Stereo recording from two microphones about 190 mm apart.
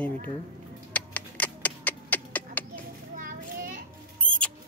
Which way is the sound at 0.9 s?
10° left (ahead or behind).